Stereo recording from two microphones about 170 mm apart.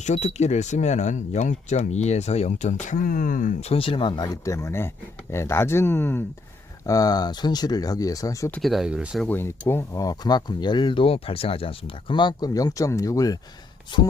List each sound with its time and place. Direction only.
0.0 s speech: 40° left (ahead or behind)
3.6 s speech: 35° left (ahead or behind); by 8.5 s 20° left (ahead or behind)
8.5 s speech: centre (ahead or behind)
9.2 s speech: 10° left (ahead or behind)